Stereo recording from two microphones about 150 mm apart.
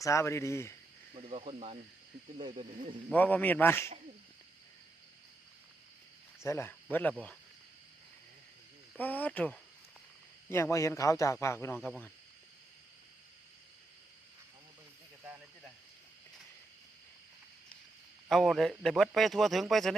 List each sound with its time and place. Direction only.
0.0 s a man's voice: 20° left (ahead or behind)
1.1 s speech: 40° right (ahead or behind)
3.1 s a man's voice: 10° left (ahead or behind)
6.4 s a man's voice: 15° left (ahead or behind)
9.0 s a man's voice: 10° left (ahead or behind)
10.5 s a man's voice: 20° left (ahead or behind)
18.3 s speech: centre (ahead or behind)